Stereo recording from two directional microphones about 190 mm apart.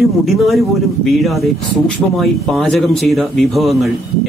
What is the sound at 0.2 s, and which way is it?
Speech, centre (ahead or behind).